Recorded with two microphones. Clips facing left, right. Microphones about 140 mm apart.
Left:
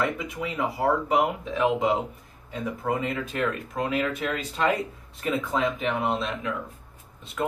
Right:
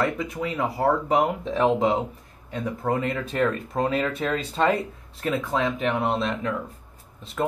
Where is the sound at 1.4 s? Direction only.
35° right (ahead or behind).